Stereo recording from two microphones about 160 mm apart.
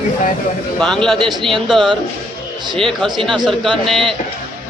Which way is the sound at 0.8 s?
5° left (ahead or behind).